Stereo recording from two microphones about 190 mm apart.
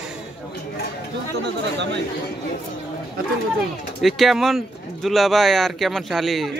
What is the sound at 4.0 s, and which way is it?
Speech, centre (ahead or behind).